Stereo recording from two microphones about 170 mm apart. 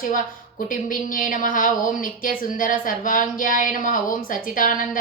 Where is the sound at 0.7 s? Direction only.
50° left (ahead or behind).